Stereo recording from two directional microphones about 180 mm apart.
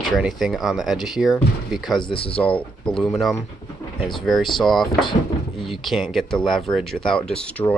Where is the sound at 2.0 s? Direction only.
30° left (ahead or behind).